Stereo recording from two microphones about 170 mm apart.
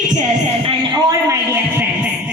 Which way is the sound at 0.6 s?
20° right (ahead or behind).